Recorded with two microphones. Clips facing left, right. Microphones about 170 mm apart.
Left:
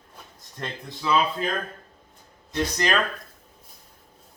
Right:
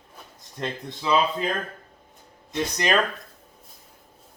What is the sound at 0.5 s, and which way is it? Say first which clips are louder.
Speech: right 4 dB; 20° right (ahead or behind).